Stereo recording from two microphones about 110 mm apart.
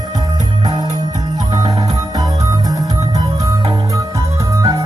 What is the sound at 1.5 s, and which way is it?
Music, 35° right (ahead or behind).